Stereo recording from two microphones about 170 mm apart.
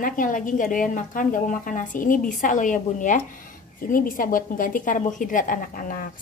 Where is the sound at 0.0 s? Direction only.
50° left (ahead or behind).